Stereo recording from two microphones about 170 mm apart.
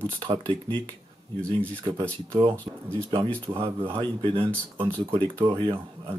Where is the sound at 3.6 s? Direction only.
30° right (ahead or behind).